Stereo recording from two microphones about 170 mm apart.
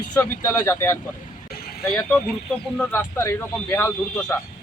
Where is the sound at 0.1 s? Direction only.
15° left (ahead or behind).